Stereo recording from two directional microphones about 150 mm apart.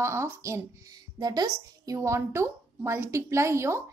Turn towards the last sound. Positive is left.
turn(degrees=-20)  # may be behind; listen again after turning